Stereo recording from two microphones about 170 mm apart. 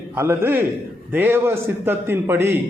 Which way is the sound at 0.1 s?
15° right (ahead or behind).